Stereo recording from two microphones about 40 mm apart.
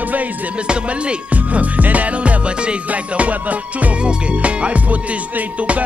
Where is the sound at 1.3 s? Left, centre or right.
Right.